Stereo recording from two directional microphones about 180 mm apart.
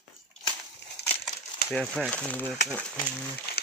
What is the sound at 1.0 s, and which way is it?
Crumpling, 65° left (ahead or behind).